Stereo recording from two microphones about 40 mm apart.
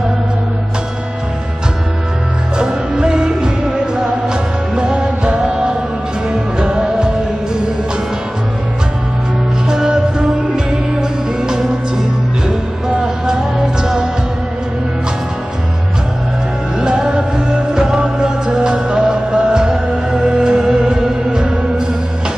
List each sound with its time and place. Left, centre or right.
2.5 s music: centre
9.7 s music: centre
16.8 s music: right